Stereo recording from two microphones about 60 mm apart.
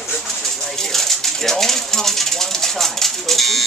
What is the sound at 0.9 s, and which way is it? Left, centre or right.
Pigeon, centre.